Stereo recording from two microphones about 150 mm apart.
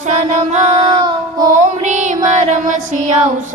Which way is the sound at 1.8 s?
55° right (ahead or behind).